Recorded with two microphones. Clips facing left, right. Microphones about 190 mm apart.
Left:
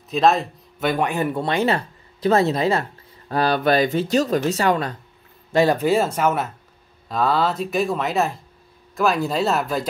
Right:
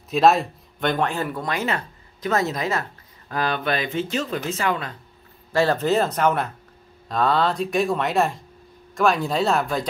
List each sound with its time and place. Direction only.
0.1 s speech: centre (ahead or behind); by 1.4 s 20° left (ahead or behind)
1.4 s speech: 30° left (ahead or behind)
5.5 s speech: 15° left (ahead or behind)